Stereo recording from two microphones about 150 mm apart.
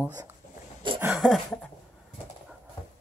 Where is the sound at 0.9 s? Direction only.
10° right (ahead or behind).